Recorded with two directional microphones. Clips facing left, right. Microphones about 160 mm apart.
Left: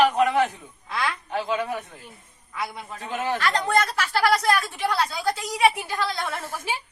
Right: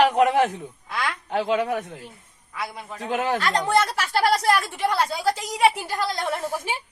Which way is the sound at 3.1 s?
65° right (ahead or behind).